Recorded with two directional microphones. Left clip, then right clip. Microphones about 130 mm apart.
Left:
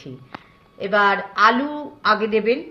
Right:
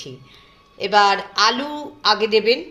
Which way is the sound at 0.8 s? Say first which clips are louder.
Right 2 dB; 35° right (ahead or behind).